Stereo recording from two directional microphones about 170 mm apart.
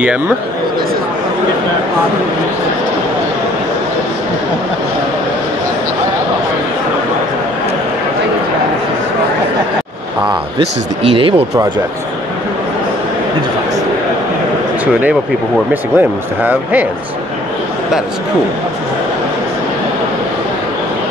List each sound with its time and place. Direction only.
11.0 s speech: 30° right (ahead or behind)
15.7 s speech: 10° right (ahead or behind)